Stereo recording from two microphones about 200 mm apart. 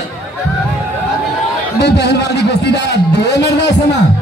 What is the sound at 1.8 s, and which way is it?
A man's voice, 60° left (ahead or behind).